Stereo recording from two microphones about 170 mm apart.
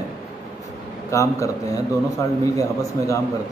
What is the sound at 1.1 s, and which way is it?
A man's voice, 20° left (ahead or behind).